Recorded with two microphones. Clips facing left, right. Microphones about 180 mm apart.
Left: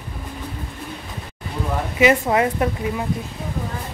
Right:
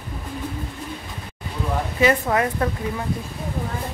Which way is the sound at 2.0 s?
20° left (ahead or behind).